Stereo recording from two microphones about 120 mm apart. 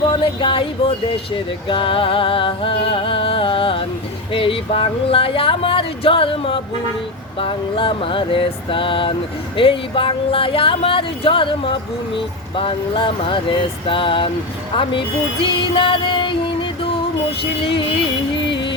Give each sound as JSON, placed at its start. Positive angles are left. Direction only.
{"t": 0.0, "sound": "a sound", "side_deg": 45}
{"t": 1.6, "sound": "speech", "side_deg": 45}
{"t": 14.8, "sound": "music", "side_deg": 45}
{"t": 17.4, "sound": "speech", "side_deg": 50}